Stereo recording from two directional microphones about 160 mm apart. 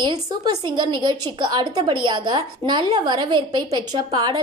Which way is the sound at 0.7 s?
30° right (ahead or behind).